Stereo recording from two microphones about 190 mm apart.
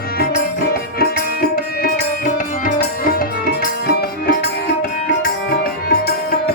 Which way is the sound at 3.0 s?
50° left (ahead or behind).